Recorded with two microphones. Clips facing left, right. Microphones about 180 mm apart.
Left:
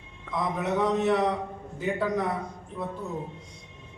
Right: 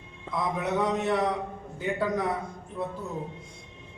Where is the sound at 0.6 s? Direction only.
Centre (ahead or behind).